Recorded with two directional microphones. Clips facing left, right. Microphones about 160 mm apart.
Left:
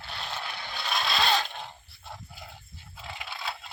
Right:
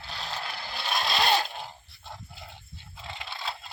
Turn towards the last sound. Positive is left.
turn(degrees=0)  # may be behind; listen again after turning